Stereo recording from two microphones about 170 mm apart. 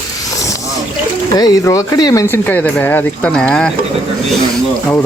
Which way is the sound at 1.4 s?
20° left (ahead or behind).